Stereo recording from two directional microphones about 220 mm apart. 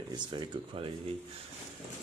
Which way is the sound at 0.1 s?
20° right (ahead or behind).